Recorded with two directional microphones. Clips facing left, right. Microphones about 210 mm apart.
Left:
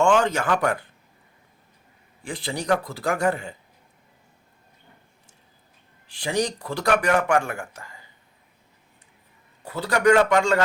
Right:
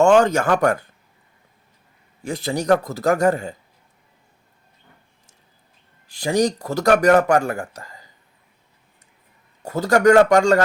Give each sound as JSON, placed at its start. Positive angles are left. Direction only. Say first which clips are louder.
{"t": 0.0, "sound": "speech", "louder": "right 5 dB", "side_deg": -45}
{"t": 2.2, "sound": "speech", "louder": "right 6 dB", "side_deg": -45}
{"t": 6.1, "sound": "speech", "louder": "right 6 dB", "side_deg": -40}
{"t": 9.6, "sound": "speech", "louder": "right 5 dB", "side_deg": -45}